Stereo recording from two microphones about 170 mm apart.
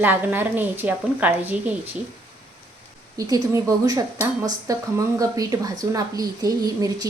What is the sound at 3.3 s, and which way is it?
A woman's voice, 20° right (ahead or behind).